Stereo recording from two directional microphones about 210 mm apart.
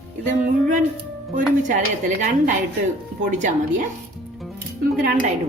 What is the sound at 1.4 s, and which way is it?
A woman's voice, 40° right (ahead or behind).